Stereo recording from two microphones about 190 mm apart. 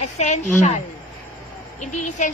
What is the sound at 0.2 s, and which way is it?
Speech, 35° left (ahead or behind).